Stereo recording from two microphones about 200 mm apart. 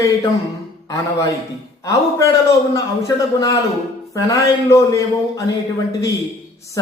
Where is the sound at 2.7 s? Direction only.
15° left (ahead or behind).